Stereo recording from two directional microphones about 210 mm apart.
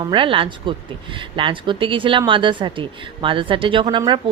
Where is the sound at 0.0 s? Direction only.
25° right (ahead or behind).